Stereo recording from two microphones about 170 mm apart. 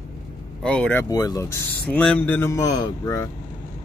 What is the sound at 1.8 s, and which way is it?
Speech, 5° left (ahead or behind).